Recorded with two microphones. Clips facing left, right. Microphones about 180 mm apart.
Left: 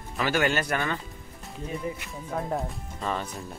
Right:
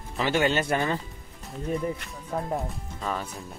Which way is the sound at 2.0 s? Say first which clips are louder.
Even; centre (ahead or behind).